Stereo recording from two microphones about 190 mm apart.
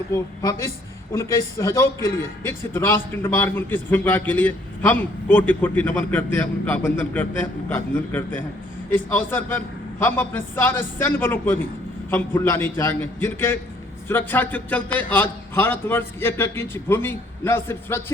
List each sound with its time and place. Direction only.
0.1 s a man's voice: 15° left (ahead or behind)